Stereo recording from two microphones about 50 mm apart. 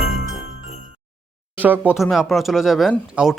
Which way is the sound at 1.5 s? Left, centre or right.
Right.